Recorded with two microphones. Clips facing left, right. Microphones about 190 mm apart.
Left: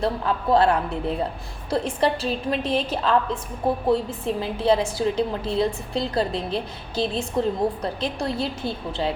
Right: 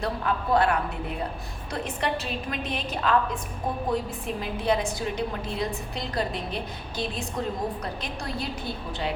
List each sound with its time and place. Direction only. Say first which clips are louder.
0.0 s a woman's voice: left 4 dB; 30° left (ahead or behind)